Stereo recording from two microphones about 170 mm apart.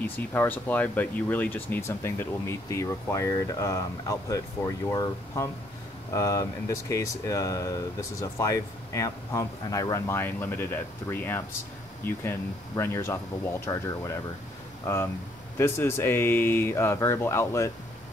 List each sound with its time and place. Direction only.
0.0 s speech: 10° left (ahead or behind)
15.5 s speech: 15° left (ahead or behind)